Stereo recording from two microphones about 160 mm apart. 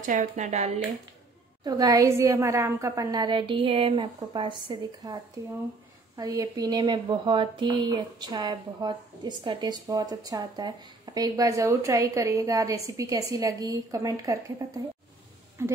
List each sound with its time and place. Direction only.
0.0 s speech: 55° right (ahead or behind)
1.6 s speech: 25° right (ahead or behind)